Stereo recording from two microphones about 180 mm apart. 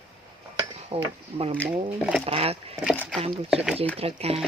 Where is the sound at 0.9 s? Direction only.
35° right (ahead or behind).